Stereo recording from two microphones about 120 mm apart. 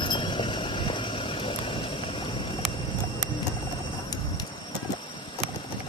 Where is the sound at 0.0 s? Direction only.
40° left (ahead or behind).